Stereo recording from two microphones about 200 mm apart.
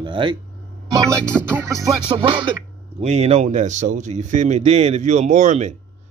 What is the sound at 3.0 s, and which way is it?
Speech, 30° right (ahead or behind).